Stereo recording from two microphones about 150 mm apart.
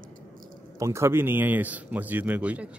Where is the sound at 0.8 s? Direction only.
20° right (ahead or behind).